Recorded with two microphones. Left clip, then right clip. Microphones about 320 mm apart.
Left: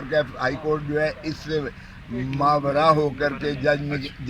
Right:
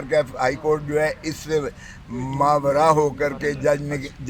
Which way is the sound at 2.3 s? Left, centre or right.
Centre.